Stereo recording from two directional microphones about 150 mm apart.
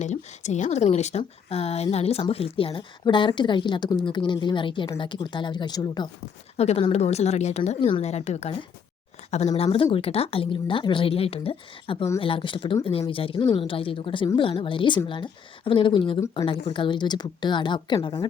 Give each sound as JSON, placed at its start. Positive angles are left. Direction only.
{"t": 0.0, "sound": "speech", "side_deg": 50}
{"t": 6.6, "sound": "speech", "side_deg": 40}